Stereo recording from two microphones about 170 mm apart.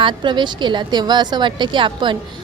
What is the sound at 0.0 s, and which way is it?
A woman's voice, 30° right (ahead or behind).